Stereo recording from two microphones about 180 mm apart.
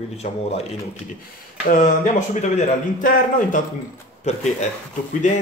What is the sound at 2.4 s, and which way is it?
Speech, 45° left (ahead or behind).